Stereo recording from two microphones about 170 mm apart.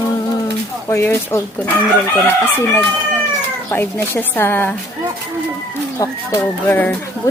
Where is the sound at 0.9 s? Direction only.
15° left (ahead or behind).